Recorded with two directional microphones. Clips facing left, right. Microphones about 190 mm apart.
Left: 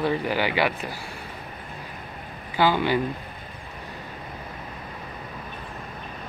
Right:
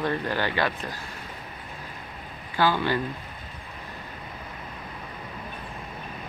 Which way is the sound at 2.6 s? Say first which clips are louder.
Left 2 dB; 15° left (ahead or behind).